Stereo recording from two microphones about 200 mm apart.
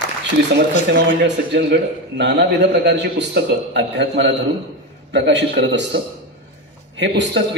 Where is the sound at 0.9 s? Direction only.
60° right (ahead or behind).